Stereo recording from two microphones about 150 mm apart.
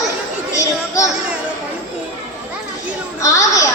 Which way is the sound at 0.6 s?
20° left (ahead or behind).